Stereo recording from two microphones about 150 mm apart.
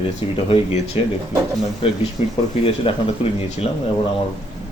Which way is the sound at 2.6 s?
40° left (ahead or behind).